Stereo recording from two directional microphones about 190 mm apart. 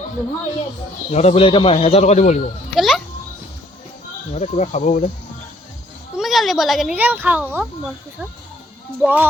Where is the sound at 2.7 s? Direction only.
Centre (ahead or behind).